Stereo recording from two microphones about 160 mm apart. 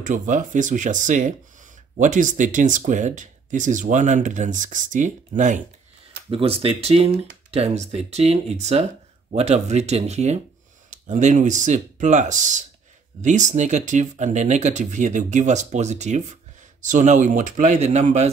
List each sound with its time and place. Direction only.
0.0 s speech: 50° right (ahead or behind)
6.3 s speech: 35° right (ahead or behind)